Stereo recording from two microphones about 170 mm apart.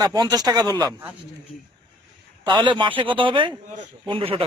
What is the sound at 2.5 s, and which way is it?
A man's voice, 25° right (ahead or behind).